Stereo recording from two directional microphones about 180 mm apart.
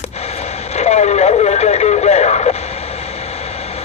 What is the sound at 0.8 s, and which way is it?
Radio, 40° left (ahead or behind).